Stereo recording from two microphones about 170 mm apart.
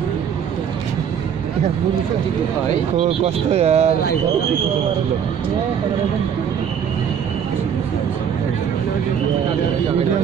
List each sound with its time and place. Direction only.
3.0 s speech: 40° right (ahead or behind)